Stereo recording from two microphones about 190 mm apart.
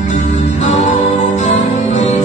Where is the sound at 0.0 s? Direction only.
40° left (ahead or behind).